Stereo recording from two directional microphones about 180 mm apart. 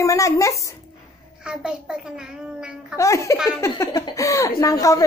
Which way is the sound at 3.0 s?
15° left (ahead or behind).